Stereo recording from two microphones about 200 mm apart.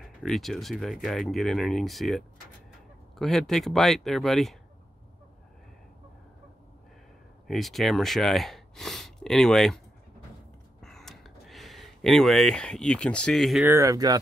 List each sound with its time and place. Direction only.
0.0 s speech: centre (ahead or behind)
7.4 s speech: centre (ahead or behind)
10.8 s a sound: centre (ahead or behind)
13.7 s speech: 15° right (ahead or behind)